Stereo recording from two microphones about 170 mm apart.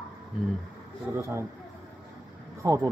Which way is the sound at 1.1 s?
15° right (ahead or behind).